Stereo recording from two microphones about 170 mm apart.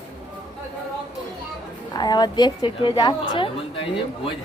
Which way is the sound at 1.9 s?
25° left (ahead or behind).